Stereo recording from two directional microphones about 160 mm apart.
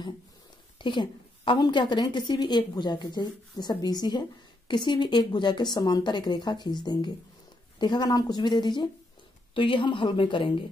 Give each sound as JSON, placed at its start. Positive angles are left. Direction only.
{"t": 0.7, "sound": "a woman's voice", "side_deg": 30}